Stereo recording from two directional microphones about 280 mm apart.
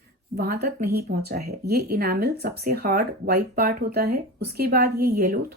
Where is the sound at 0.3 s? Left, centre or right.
Right.